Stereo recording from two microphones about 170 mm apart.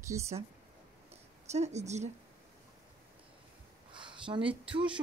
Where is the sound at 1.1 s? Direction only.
40° right (ahead or behind).